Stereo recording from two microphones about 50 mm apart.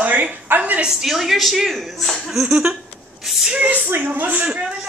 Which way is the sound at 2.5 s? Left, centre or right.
Centre.